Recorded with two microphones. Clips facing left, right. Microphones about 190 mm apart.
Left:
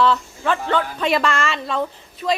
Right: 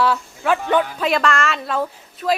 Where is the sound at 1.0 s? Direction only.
Centre (ahead or behind).